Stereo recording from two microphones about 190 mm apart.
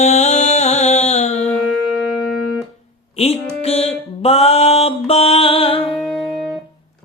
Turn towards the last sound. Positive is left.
turn(degrees=0)  # may be behind; listen again after turning